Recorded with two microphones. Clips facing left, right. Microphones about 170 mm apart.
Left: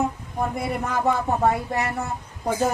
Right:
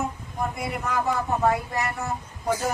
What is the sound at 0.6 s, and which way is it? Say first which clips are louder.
Speech: left 3 dB; 60° left (ahead or behind).